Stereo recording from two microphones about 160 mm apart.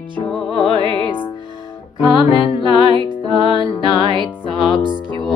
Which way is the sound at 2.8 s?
30° right (ahead or behind).